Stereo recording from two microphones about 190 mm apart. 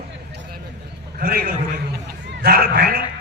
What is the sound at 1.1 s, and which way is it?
Speech, 50° right (ahead or behind).